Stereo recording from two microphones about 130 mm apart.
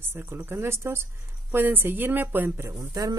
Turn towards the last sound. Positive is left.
turn(degrees=-25)  # may be behind; listen again after turning